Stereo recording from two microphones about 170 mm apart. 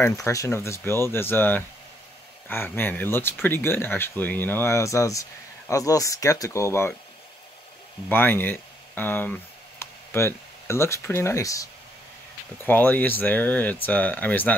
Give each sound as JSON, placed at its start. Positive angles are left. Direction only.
{"t": 0.0, "sound": "speech", "side_deg": 20}
{"t": 8.1, "sound": "speech", "side_deg": 10}
{"t": 12.6, "sound": "speech", "side_deg": 10}